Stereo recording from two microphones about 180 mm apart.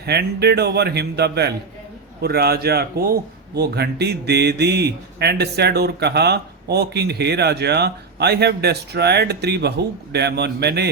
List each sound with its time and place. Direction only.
0.0 s speech: 65° right (ahead or behind)